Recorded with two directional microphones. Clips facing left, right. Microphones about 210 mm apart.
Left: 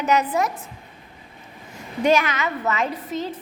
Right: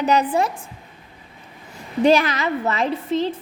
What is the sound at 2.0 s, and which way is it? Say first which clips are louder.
A woman's voice: right 3 dB; 35° right (ahead or behind).